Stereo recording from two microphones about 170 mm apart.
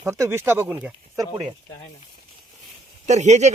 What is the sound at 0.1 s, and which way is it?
Speech, 15° right (ahead or behind).